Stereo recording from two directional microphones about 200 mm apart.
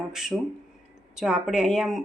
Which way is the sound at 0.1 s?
Centre (ahead or behind).